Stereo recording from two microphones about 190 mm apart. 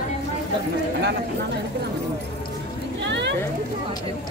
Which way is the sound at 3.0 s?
70° right (ahead or behind).